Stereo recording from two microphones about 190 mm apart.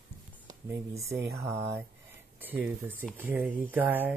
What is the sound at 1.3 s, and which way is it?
Speech, 15° right (ahead or behind).